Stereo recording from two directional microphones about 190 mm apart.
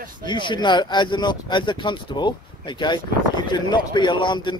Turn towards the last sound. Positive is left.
turn(degrees=25)  # may be behind; listen again after turning